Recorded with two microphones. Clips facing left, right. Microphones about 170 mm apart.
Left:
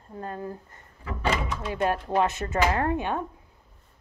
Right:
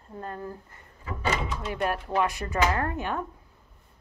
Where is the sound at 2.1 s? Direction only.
25° left (ahead or behind).